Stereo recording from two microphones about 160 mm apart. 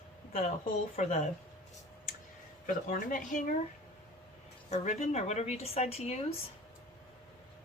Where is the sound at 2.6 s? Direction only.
55° left (ahead or behind).